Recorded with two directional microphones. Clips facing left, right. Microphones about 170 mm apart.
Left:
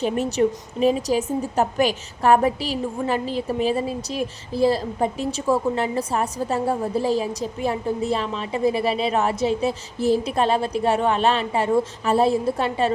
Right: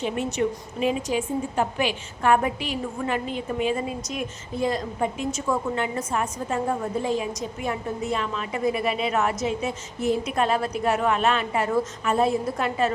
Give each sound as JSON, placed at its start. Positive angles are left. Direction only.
{"t": 0.0, "sound": "a woman's voice", "side_deg": 35}